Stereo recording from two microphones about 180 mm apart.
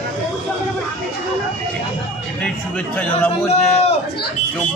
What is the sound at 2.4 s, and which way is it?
A man's voice, 5° left (ahead or behind).